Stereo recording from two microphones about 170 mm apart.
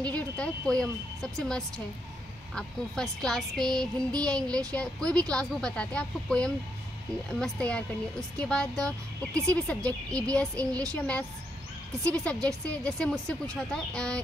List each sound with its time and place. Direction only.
0.0 s speech: 5° left (ahead or behind)